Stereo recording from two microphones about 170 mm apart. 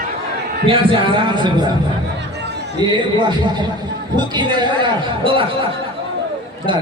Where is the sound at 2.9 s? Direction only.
25° right (ahead or behind).